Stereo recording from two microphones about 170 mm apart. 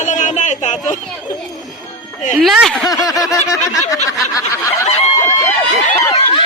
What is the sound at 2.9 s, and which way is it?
Speech, 20° left (ahead or behind).